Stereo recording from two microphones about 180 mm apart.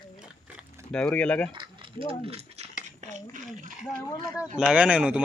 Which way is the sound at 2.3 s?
35° right (ahead or behind).